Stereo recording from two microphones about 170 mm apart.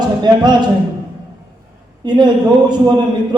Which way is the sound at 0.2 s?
25° right (ahead or behind).